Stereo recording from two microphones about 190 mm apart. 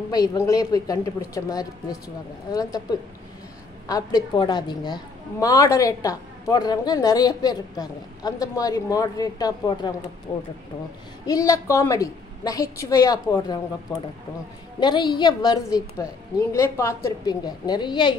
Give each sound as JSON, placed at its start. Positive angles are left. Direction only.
{"t": 0.1, "sound": "a woman's voice", "side_deg": 20}
{"t": 14.8, "sound": "a woman's voice", "side_deg": 25}